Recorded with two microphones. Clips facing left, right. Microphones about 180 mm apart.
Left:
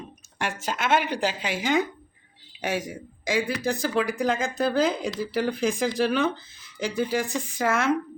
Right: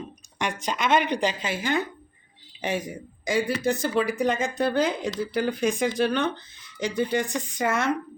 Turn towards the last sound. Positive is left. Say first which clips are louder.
# left 1 dB
turn(degrees=0)  # may be behind; listen again after turning